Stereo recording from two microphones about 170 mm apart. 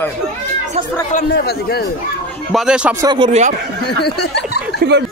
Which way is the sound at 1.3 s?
70° left (ahead or behind).